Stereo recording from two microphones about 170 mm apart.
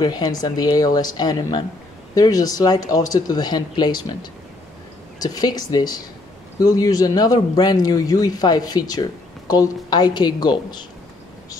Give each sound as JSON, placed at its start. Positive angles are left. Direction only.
{"t": 0.0, "sound": "speech", "side_deg": 25}